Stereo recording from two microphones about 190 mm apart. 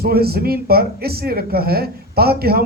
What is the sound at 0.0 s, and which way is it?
Speech, 55° right (ahead or behind).